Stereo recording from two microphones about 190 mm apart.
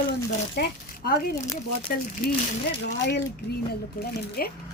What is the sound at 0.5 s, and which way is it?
Speech, 50° left (ahead or behind).